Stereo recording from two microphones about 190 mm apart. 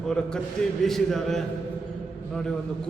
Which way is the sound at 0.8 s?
Centre (ahead or behind).